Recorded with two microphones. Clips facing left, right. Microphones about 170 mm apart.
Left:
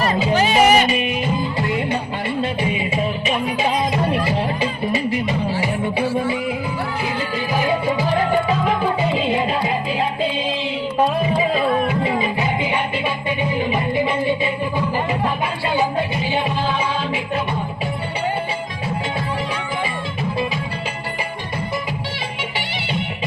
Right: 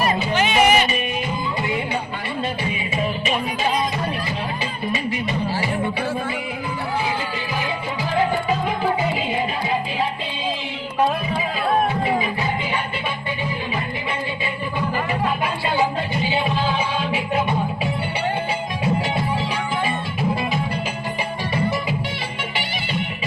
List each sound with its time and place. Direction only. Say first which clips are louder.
0.3 s music: left 3 dB; 35° left (ahead or behind)